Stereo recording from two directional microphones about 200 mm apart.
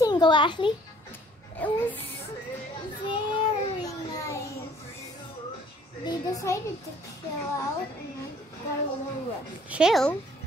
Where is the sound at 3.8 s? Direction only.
20° left (ahead or behind).